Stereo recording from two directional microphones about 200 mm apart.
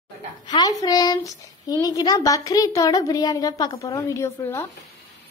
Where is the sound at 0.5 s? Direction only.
20° left (ahead or behind).